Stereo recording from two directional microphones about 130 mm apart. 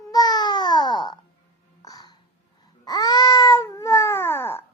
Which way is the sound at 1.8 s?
30° left (ahead or behind).